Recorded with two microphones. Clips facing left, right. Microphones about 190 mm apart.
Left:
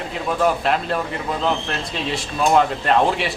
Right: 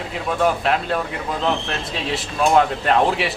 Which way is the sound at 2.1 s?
Centre (ahead or behind).